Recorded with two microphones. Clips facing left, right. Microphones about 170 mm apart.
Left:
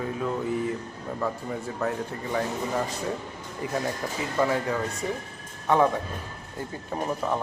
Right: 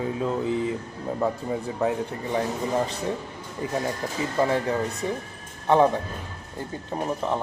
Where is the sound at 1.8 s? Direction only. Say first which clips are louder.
Right 3 dB; 15° right (ahead or behind).